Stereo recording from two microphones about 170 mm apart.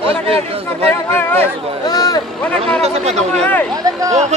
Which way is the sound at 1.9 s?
25° left (ahead or behind).